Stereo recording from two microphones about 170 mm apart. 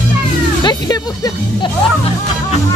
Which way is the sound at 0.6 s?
25° left (ahead or behind).